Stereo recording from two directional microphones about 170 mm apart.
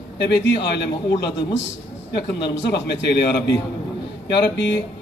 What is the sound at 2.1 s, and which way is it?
A man's voice, 80° left.